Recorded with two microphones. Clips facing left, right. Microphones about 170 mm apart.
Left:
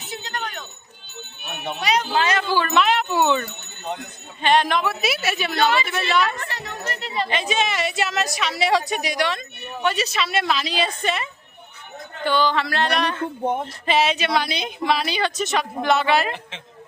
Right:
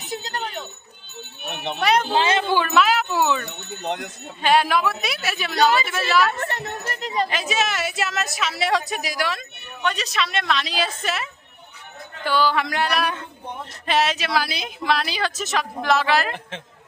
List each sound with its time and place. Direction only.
0.1 s jingle bell: 35° right (ahead or behind)
1.8 s speech: 55° right (ahead or behind)
2.0 s speech: 25° right (ahead or behind)
2.6 s wind chime: centre (ahead or behind)
3.8 s speech: 80° right
4.4 s a woman's voice: 5° right (ahead or behind)
6.4 s speech: 50° right (ahead or behind)
7.3 s a woman's voice: centre (ahead or behind)
13.2 s speech: 55° left (ahead or behind)
13.8 s a woman's voice: centre (ahead or behind)